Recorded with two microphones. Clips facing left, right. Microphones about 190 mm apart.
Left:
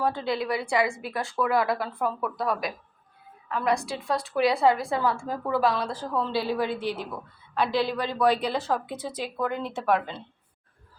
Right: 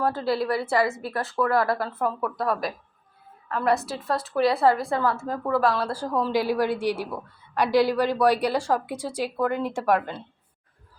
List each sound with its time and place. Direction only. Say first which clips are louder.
0.0 s a woman's voice: right 3 dB; 5° right (ahead or behind)